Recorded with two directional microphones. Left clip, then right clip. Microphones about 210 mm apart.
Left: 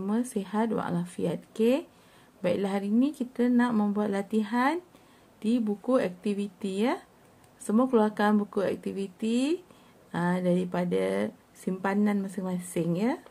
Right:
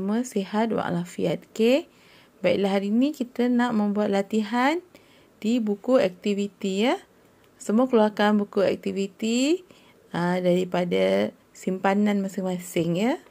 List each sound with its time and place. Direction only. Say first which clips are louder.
0.0 s speech: right 4 dB; 20° right (ahead or behind)